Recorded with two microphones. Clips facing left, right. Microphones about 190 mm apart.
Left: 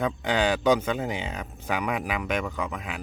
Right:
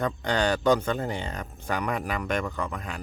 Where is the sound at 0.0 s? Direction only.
5° left (ahead or behind).